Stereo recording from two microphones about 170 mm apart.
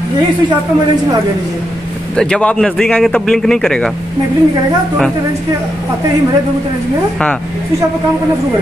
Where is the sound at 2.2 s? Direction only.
5° left (ahead or behind).